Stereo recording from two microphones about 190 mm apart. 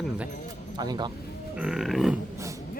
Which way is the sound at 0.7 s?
20° right (ahead or behind).